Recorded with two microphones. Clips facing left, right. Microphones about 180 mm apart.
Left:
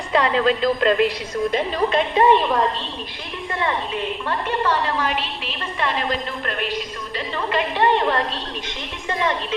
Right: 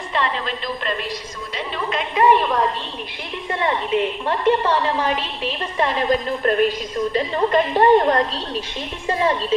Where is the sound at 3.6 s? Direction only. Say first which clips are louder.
Right 4 dB; 25° right (ahead or behind).